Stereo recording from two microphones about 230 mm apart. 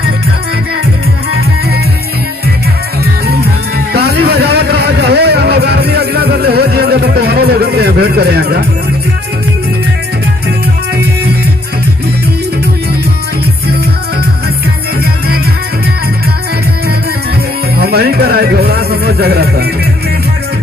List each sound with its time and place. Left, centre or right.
3.0 s music: right
17.7 s music: right